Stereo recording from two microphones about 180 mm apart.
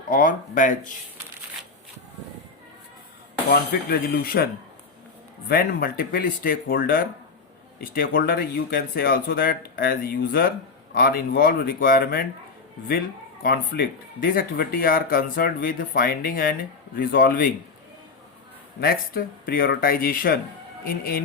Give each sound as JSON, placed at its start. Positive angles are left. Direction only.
{"t": 0.1, "sound": "speech", "side_deg": 50}
{"t": 3.5, "sound": "speech", "side_deg": 60}
{"t": 5.5, "sound": "speech", "side_deg": 55}
{"t": 13.4, "sound": "speech", "side_deg": 55}
{"t": 18.8, "sound": "speech", "side_deg": 55}